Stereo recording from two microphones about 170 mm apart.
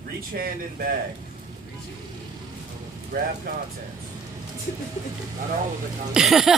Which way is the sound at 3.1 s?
65° right (ahead or behind).